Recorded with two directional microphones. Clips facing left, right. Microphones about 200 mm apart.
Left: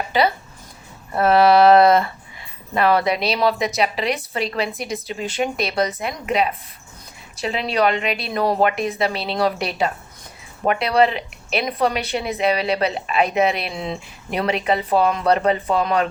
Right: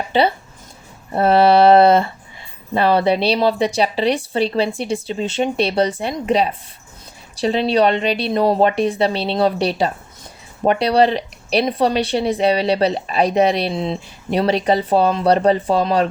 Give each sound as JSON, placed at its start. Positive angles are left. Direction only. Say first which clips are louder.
{"t": 0.1, "sound": "speech", "louder": "right 3 dB", "side_deg": -30}